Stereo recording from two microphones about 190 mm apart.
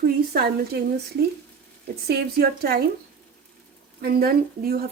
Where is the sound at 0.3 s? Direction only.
55° right (ahead or behind).